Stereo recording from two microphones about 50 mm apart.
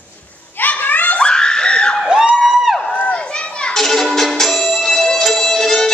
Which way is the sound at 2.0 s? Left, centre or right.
Centre.